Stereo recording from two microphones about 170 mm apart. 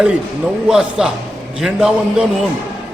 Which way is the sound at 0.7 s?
5° right (ahead or behind).